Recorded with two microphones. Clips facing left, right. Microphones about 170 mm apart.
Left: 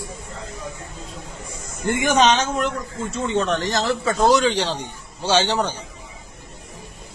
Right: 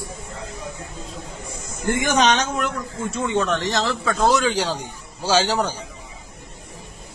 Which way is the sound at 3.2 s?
20° left (ahead or behind).